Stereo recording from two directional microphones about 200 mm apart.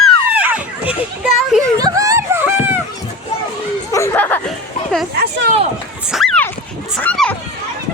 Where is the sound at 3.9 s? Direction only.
15° left (ahead or behind).